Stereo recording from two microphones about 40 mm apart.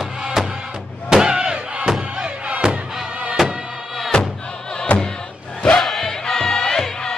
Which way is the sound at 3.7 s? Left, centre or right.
Centre.